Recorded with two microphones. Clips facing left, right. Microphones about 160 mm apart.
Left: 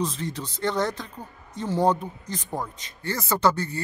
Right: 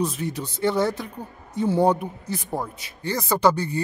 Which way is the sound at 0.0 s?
10° right (ahead or behind).